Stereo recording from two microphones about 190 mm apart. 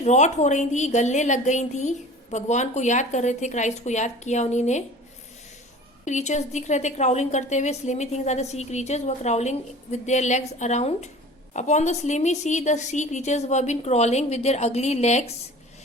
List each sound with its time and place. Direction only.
0.0 s a woman's voice: 40° left (ahead or behind)
6.1 s a woman's voice: 40° left (ahead or behind)